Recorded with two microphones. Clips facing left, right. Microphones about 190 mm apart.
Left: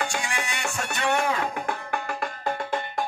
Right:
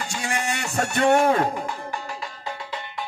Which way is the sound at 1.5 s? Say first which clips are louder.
Even; 55° left (ahead or behind).